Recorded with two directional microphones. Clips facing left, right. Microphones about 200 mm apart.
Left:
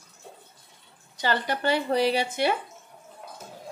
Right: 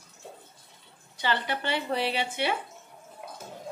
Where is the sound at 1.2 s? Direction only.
40° left (ahead or behind).